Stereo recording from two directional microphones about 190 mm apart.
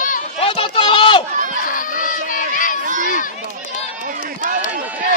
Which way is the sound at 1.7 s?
45° left (ahead or behind).